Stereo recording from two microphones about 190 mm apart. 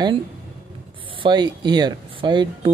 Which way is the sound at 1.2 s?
20° right (ahead or behind).